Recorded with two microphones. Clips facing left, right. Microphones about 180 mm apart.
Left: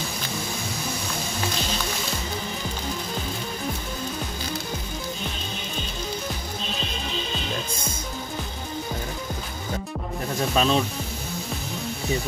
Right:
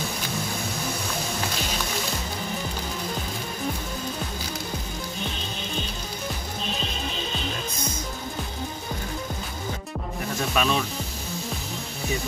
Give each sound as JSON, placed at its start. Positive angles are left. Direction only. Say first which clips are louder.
{"t": 10.5, "sound": "speech", "louder": "left 3 dB", "side_deg": 30}